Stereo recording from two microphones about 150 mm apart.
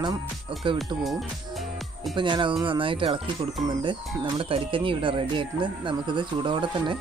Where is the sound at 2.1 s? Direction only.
30° right (ahead or behind).